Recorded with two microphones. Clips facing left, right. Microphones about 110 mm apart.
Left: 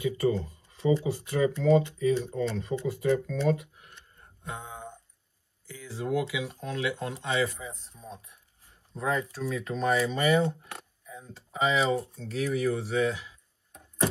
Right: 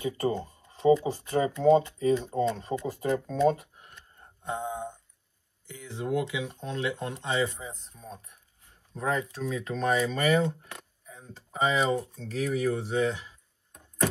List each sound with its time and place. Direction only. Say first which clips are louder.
0.0 s speech: left 2 dB; 30° right (ahead or behind)
4.2 s music: right 7 dB; 25° right (ahead or behind)
5.7 s speech: even; 20° right (ahead or behind)
7.9 s speech: even; 20° left (ahead or behind)
9.4 s speech: even; centre (ahead or behind)
11.3 s speech: even; 30° right (ahead or behind)